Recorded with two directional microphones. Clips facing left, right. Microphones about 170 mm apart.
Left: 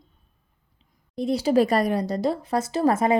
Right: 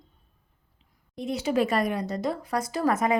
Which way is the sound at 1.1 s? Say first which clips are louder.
Left 6 dB; 35° left (ahead or behind).